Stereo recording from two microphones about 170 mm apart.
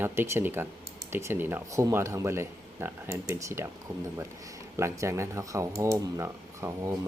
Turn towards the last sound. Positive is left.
turn(degrees=-20)  # may be behind; listen again after turning